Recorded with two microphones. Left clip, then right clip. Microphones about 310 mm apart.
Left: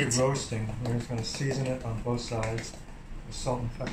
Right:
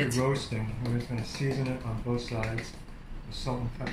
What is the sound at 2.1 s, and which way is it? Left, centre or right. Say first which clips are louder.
Speech: left 1 dB; centre.